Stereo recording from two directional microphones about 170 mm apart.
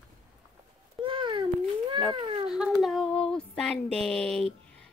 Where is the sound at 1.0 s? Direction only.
30° right (ahead or behind).